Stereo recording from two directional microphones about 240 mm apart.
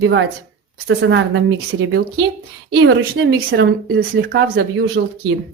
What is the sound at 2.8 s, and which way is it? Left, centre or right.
Speech, right.